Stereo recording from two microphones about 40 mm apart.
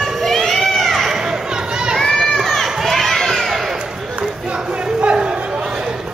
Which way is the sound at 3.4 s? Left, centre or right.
Centre.